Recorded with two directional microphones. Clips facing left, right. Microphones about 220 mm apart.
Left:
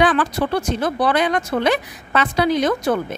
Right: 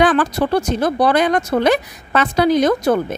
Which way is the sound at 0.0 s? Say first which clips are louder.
Right 3 dB; 40° right (ahead or behind).